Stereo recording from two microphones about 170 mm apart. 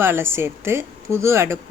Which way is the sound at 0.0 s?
15° right (ahead or behind).